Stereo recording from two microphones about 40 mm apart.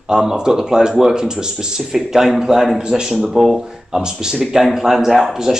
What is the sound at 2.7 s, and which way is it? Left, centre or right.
Speech, centre.